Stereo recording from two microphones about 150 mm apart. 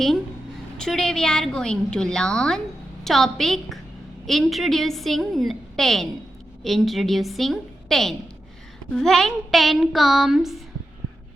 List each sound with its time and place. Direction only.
0.8 s a woman's voice: 5° left (ahead or behind)